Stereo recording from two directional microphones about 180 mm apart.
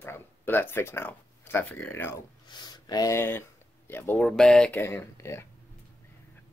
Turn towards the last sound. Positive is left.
turn(degrees=15)  # may be behind; listen again after turning